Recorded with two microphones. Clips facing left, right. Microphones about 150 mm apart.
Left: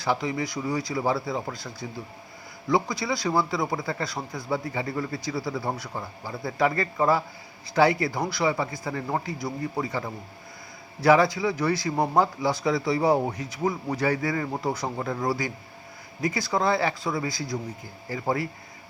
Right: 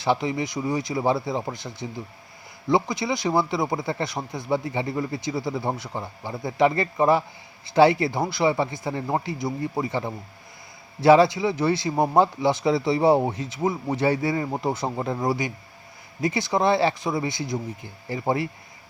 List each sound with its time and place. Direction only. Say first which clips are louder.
0.0 s speech: right 3 dB; 25° right (ahead or behind)